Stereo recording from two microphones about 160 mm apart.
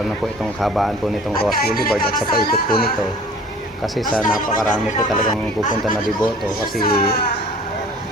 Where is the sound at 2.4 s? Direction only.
70° left (ahead or behind).